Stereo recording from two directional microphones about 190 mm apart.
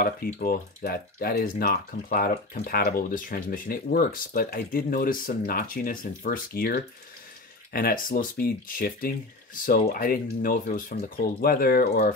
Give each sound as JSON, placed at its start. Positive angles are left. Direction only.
{"t": 0.0, "sound": "speech", "side_deg": 50}